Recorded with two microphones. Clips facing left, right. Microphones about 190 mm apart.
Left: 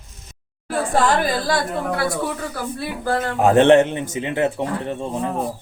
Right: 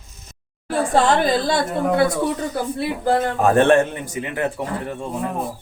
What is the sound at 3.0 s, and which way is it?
Speech, 20° right (ahead or behind).